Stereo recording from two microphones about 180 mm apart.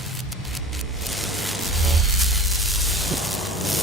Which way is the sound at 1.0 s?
Centre (ahead or behind).